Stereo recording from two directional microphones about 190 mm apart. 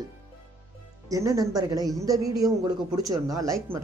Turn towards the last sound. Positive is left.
turn(degrees=-15)  # may be behind; listen again after turning